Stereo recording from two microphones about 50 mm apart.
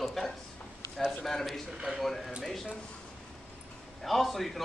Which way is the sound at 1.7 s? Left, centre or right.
Centre.